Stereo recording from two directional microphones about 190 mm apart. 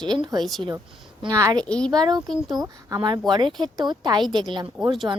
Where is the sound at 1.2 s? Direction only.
15° right (ahead or behind).